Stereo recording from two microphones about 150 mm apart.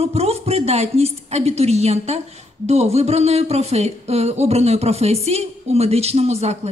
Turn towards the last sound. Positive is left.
turn(degrees=-45)  # may be behind; listen again after turning